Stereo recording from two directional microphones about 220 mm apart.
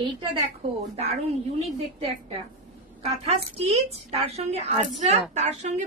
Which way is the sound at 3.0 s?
30° right (ahead or behind).